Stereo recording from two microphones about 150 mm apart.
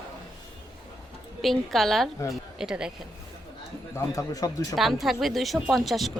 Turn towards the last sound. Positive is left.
turn(degrees=0)  # may be behind; listen again after turning